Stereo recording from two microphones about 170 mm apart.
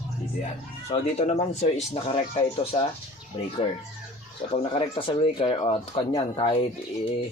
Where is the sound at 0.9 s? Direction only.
40° left (ahead or behind).